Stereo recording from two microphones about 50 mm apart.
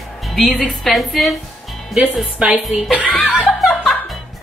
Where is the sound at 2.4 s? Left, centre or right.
Right.